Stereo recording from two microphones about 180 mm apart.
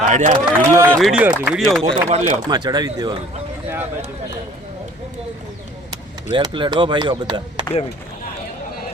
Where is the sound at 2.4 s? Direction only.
25° right (ahead or behind).